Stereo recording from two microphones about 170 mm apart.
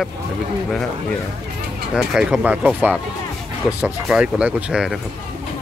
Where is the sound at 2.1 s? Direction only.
5° right (ahead or behind).